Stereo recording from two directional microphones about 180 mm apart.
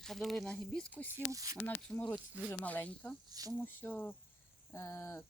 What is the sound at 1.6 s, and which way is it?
Speech, 10° left (ahead or behind).